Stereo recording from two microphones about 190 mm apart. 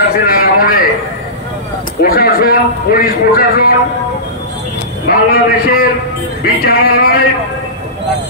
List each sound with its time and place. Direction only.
0.3 s a man's voice: 50° left (ahead or behind)
2.0 s a man's voice: 50° left (ahead or behind)
5.0 s a man's voice: 50° left (ahead or behind)